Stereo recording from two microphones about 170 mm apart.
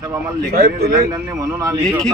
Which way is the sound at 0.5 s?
65° right (ahead or behind).